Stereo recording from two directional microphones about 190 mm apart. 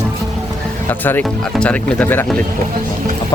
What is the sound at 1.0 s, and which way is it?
Speech, 10° left (ahead or behind).